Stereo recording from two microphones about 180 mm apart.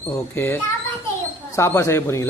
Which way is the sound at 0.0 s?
15° left (ahead or behind).